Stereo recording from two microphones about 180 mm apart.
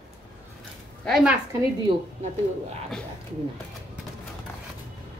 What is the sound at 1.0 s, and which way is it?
Speech, centre (ahead or behind).